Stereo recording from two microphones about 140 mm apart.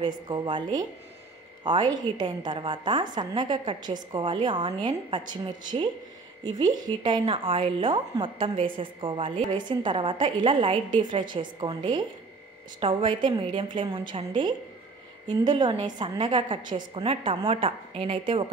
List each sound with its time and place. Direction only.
0.0 s a woman's voice: 30° right (ahead or behind)
7.1 s a woman's voice: 40° right (ahead or behind)